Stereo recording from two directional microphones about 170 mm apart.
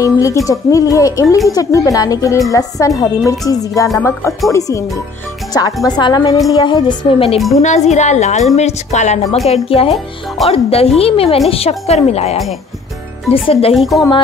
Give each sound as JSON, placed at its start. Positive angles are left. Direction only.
{"t": 0.0, "sound": "speech", "side_deg": 20}
{"t": 7.6, "sound": "a woman's voice", "side_deg": 40}
{"t": 13.7, "sound": "a woman's voice", "side_deg": 0}